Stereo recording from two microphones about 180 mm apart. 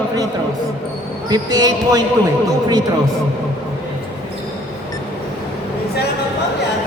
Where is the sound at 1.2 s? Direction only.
20° right (ahead or behind).